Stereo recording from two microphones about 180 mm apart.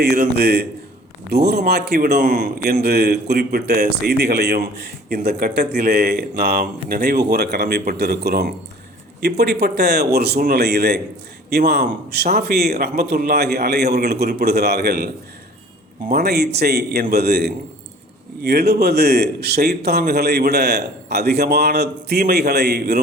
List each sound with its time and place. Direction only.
0.0 s speech: 65° right (ahead or behind)
2.2 s a man's voice: 45° right (ahead or behind)
2.8 s a man's voice: 65° right (ahead or behind)